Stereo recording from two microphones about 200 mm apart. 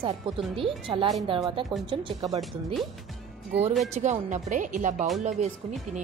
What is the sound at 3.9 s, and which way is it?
Speech, 35° right (ahead or behind).